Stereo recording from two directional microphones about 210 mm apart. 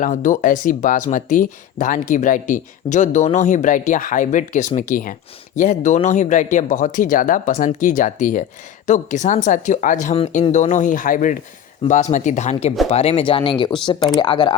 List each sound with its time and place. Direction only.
0.0 s speech: 40° left (ahead or behind); by 14.5 s 25° left (ahead or behind)